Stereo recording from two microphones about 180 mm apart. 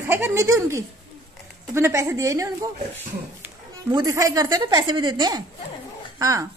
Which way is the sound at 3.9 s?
15° right (ahead or behind).